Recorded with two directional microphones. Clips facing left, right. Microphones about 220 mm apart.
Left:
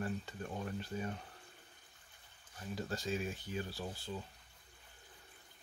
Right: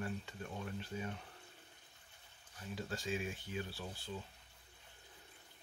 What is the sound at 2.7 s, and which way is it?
Speech, 40° left (ahead or behind).